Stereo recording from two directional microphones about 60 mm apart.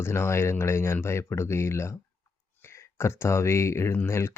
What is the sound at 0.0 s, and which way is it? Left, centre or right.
Speech, left.